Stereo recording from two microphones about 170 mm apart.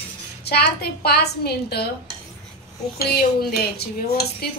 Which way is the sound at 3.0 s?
65° left (ahead or behind).